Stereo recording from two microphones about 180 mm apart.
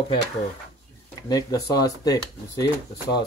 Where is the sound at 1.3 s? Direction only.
20° left (ahead or behind).